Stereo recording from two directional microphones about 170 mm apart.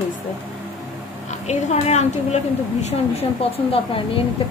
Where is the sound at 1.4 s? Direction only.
40° left (ahead or behind).